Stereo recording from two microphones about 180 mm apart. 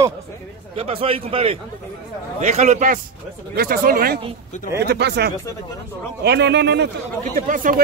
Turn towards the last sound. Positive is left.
turn(degrees=-50)  # may be behind; listen again after turning